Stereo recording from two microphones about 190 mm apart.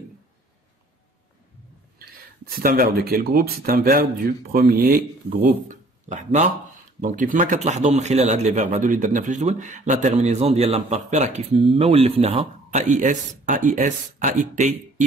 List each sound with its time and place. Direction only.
2.0 s speech: 50° right (ahead or behind)
5.7 s a man's voice: 40° right (ahead or behind)